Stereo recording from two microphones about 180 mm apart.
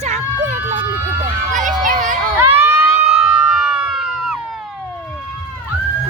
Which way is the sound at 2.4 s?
15° right (ahead or behind).